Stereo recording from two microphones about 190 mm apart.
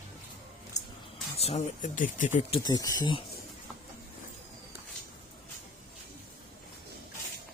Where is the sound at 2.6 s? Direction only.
20° left (ahead or behind).